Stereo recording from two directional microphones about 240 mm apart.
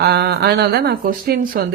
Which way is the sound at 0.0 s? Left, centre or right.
Right.